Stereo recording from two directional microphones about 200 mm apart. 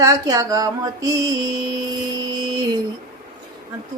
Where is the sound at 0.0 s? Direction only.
15° right (ahead or behind).